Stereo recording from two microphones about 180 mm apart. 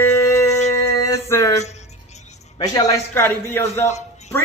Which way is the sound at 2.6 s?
20° left (ahead or behind).